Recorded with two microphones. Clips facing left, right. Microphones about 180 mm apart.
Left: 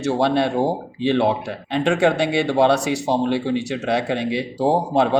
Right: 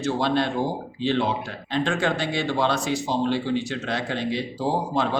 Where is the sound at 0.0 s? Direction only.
70° left (ahead or behind).